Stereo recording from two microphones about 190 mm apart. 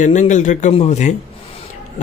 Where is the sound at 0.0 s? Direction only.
40° left (ahead or behind).